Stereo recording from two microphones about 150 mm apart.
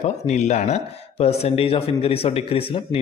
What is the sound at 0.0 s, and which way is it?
A man's voice, 50° left (ahead or behind).